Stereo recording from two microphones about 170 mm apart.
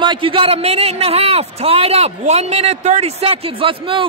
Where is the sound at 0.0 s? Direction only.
30° right (ahead or behind).